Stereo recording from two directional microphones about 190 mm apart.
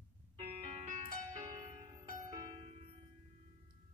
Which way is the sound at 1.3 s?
20° right (ahead or behind).